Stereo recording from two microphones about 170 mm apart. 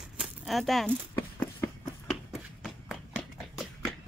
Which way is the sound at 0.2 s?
Centre (ahead or behind).